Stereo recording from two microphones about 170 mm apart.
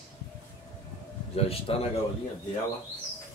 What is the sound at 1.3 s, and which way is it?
Speech, 35° left (ahead or behind).